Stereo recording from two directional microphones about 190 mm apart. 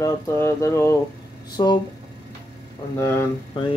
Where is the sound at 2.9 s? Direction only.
15° left (ahead or behind).